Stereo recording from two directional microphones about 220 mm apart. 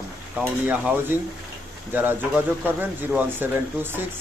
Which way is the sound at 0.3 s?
5° right (ahead or behind).